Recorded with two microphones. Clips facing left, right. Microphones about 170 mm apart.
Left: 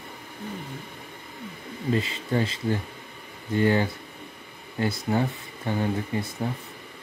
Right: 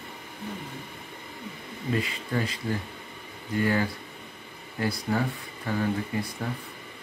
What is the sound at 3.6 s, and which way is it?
Speech, 25° left (ahead or behind).